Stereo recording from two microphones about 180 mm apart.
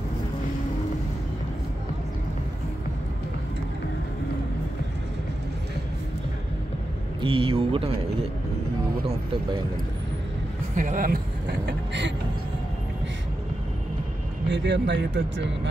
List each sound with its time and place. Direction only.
7.2 s speech: 30° right (ahead or behind)
10.8 s speech: 50° right (ahead or behind)
11.6 s speech: 75° right (ahead or behind)
14.5 s speech: 75° right (ahead or behind)